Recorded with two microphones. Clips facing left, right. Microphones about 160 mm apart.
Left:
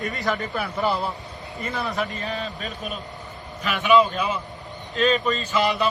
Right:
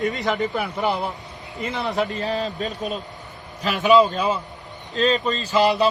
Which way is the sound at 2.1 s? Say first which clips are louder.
Right 5 dB; 35° right (ahead or behind).